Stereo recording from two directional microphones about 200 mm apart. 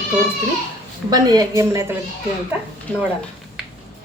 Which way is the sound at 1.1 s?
20° right (ahead or behind).